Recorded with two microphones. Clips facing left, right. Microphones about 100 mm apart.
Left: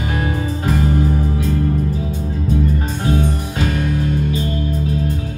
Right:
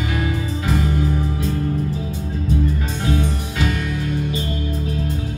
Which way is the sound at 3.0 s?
40° left (ahead or behind).